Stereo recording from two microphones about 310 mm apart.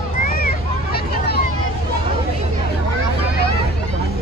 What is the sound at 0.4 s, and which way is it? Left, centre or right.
Hubbub, left.